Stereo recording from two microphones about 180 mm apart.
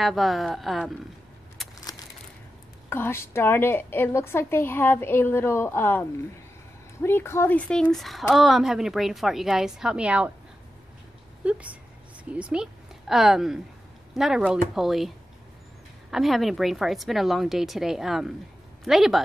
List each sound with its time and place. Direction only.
0.0 s a woman's voice: centre (ahead or behind)
1.6 s a sound: centre (ahead or behind)
2.9 s a woman's voice: 15° left (ahead or behind); by 10.3 s 5° right (ahead or behind)
11.4 s a woman's voice: 5° right (ahead or behind)